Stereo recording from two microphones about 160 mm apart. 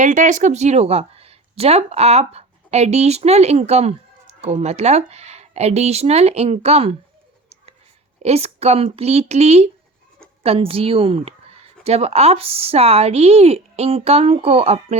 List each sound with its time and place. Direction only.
0.0 s speech: 50° right (ahead or behind)
8.2 s speech: 40° right (ahead or behind)